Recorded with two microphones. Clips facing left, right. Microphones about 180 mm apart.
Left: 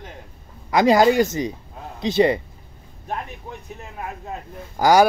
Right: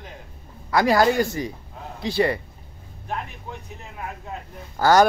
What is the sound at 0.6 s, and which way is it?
Speech, 20° left (ahead or behind).